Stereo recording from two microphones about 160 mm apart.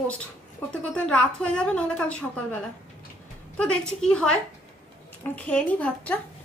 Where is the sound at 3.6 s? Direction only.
5° left (ahead or behind).